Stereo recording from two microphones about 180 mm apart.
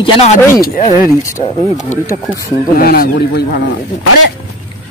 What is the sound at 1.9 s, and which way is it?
Speech, 15° left (ahead or behind).